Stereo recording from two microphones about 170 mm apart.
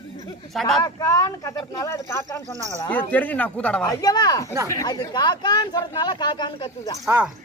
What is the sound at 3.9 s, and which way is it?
Speech, 25° left (ahead or behind).